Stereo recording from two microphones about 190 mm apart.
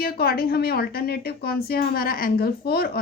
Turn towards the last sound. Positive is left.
turn(degrees=55)  # may be behind; listen again after turning